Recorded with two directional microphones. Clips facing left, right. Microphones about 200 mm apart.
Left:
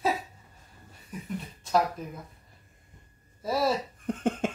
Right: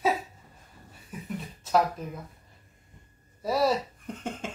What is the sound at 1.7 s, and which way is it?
Speech, centre (ahead or behind).